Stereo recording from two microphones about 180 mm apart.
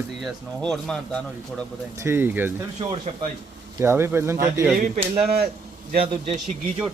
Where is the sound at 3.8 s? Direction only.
15° right (ahead or behind).